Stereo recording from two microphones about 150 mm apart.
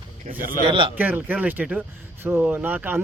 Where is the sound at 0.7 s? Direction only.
35° right (ahead or behind).